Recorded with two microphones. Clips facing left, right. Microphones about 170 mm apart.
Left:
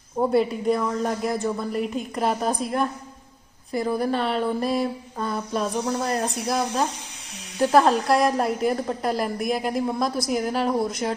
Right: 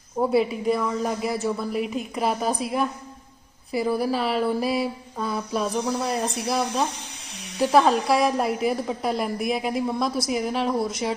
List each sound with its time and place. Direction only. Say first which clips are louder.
0.2 s a woman's voice: even; 5° right (ahead or behind)